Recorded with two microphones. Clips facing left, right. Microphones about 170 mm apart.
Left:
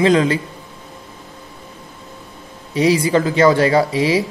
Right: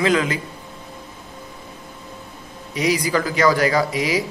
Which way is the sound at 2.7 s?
30° left (ahead or behind).